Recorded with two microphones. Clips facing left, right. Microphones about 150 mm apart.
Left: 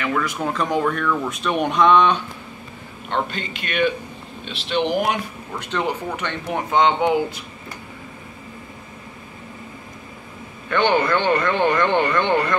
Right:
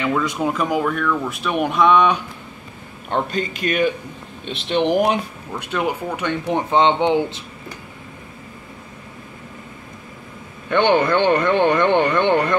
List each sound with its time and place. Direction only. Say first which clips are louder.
0.0 s speech: right 3 dB; 20° right (ahead or behind)
3.1 s a man's voice: right 3 dB; 40° right (ahead or behind)
5.6 s speech: right 2 dB; 10° right (ahead or behind)
6.5 s speech: right 1 dB; 30° right (ahead or behind)
10.7 s speech: right 2 dB; 20° right (ahead or behind)